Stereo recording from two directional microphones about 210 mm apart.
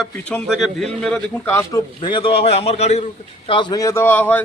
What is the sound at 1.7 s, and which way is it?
A man's voice, 25° left (ahead or behind).